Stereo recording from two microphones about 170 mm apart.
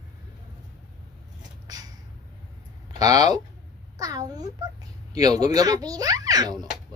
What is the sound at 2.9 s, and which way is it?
A child's voice, 20° right (ahead or behind).